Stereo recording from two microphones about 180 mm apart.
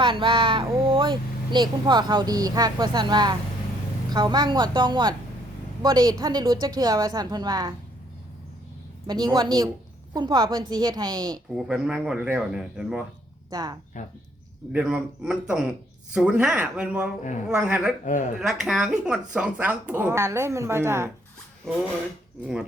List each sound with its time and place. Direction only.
0.0 s speech: 25° right (ahead or behind)
9.0 s speech: 25° right (ahead or behind)
11.5 s speech: 5° right (ahead or behind)
13.5 s speech: 20° right (ahead or behind)
14.7 s speech: 5° right (ahead or behind)
18.0 s speech: 45° left (ahead or behind)
18.3 s speech: 5° right (ahead or behind)
21.7 s speech: 5° left (ahead or behind)